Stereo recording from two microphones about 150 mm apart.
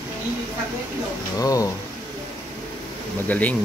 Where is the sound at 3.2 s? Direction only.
10° left (ahead or behind).